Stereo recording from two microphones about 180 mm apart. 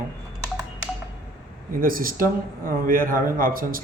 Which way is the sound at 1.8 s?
50° right (ahead or behind).